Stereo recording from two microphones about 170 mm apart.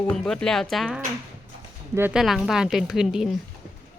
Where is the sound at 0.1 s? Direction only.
5° left (ahead or behind).